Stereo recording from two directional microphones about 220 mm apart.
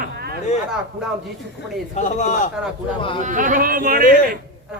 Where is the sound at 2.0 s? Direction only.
30° left (ahead or behind).